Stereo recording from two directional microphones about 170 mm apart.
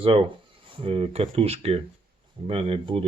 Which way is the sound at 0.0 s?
30° right (ahead or behind).